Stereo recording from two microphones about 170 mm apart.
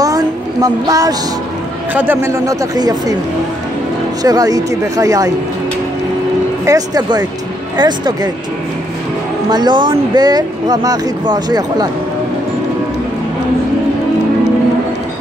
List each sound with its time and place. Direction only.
0.0 s a sound: 20° right (ahead or behind)
2.0 s speech: 15° right (ahead or behind)
4.2 s speech: 20° right (ahead or behind)
6.6 s speech: 20° right (ahead or behind)
9.5 s speech: 25° right (ahead or behind)